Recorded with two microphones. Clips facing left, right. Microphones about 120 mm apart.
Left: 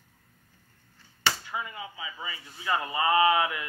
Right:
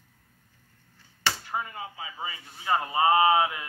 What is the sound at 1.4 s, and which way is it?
Speech, 45° right (ahead or behind).